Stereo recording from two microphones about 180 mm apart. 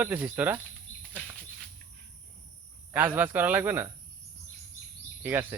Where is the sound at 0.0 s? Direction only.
10° right (ahead or behind).